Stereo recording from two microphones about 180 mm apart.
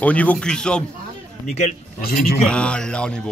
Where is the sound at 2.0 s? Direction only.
55° left (ahead or behind).